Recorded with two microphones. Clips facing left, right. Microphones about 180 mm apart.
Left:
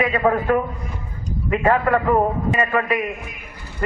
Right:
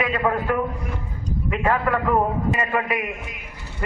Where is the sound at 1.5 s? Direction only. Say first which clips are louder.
Left 4 dB; 40° left (ahead or behind).